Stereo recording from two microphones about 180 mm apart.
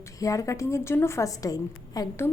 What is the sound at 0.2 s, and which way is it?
A woman's voice, 20° left (ahead or behind).